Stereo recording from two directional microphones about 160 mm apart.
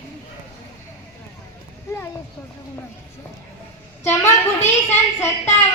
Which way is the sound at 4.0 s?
15° left (ahead or behind).